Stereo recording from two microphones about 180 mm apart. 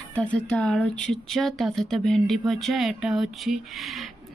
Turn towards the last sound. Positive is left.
turn(degrees=0)  # may be behind; listen again after turning